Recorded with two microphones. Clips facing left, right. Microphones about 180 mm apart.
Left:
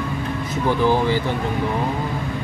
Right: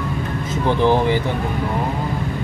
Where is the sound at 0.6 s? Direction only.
20° right (ahead or behind).